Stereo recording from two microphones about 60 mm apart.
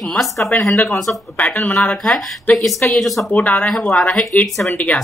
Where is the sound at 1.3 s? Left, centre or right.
Left.